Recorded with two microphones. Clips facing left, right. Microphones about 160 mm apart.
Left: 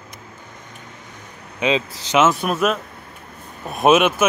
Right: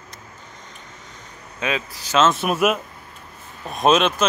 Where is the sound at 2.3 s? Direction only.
5° right (ahead or behind).